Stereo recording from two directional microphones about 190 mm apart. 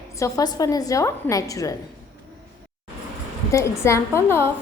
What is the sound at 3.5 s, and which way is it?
Speech, 15° left (ahead or behind).